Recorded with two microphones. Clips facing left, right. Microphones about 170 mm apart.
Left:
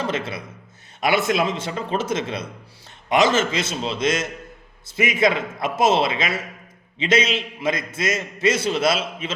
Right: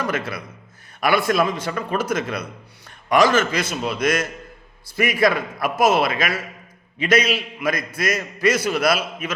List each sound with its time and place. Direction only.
0.0 s a man's voice: 25° left (ahead or behind)